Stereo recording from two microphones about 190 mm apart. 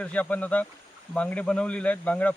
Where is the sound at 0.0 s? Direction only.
10° left (ahead or behind).